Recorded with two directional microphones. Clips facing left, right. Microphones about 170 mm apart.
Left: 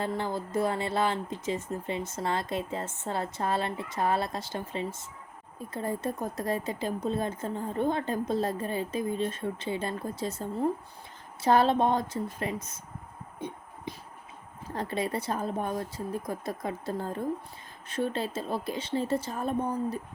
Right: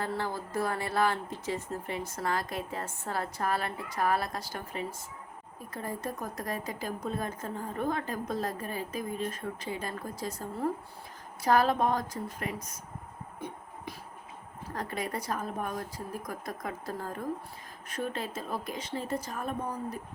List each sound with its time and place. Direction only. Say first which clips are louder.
0.0 s speech: left 2 dB; 20° left (ahead or behind)
13.9 s a sound: left 4 dB; 20° left (ahead or behind)
14.7 s speech: left 4 dB; 30° left (ahead or behind)